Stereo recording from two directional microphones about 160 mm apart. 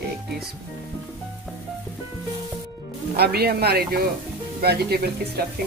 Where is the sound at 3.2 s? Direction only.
75° right (ahead or behind).